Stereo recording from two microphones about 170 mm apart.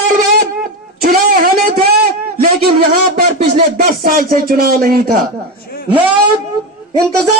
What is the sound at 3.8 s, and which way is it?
Speech, 55° right (ahead or behind).